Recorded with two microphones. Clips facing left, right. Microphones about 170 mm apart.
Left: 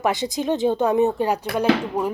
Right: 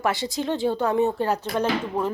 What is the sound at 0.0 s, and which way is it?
Speech, 20° left (ahead or behind).